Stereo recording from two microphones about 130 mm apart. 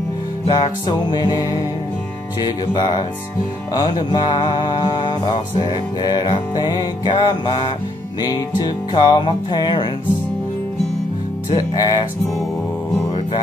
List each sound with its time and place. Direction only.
0.5 s music: 40° left (ahead or behind)
11.5 s music: 30° left (ahead or behind)